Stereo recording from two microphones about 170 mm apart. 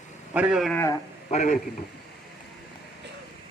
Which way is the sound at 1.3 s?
40° left (ahead or behind).